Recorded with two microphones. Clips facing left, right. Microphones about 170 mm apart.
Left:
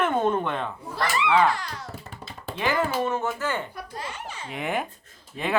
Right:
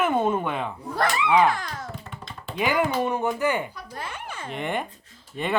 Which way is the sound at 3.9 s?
55° right (ahead or behind).